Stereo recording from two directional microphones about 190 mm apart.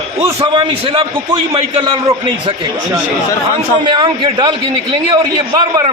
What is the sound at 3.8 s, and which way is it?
A man's voice, 25° right (ahead or behind).